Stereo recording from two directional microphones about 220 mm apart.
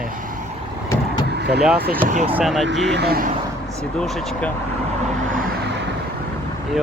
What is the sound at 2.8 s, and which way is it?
Speech, 50° right (ahead or behind).